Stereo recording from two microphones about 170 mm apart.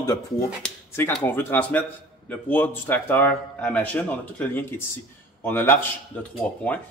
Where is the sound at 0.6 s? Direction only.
10° left (ahead or behind).